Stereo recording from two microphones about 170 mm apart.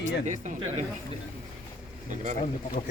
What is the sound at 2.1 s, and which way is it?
Speech, 45° right (ahead or behind).